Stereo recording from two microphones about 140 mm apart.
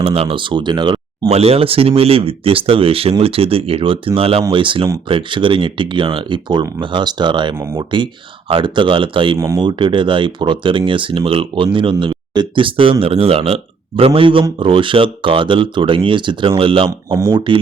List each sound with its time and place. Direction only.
0.0 s speech: 40° right (ahead or behind)
1.3 s speech: 45° right (ahead or behind)